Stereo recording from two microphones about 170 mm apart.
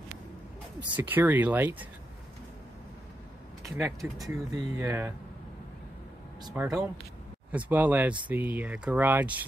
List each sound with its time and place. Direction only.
0.9 s speech: 10° right (ahead or behind)
3.7 s speech: centre (ahead or behind)
4.2 s speech: 20° right (ahead or behind)
6.5 s speech: 10° right (ahead or behind)